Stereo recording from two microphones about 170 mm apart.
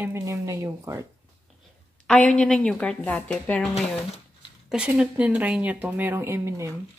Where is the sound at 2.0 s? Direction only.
5° left (ahead or behind).